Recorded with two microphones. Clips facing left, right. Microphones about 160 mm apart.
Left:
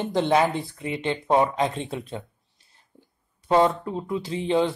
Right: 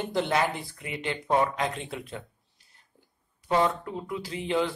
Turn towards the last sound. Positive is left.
turn(degrees=25)  # may be behind; listen again after turning